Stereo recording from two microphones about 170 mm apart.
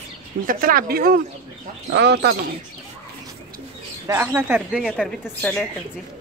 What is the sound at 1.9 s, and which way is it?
Speech, 80° right.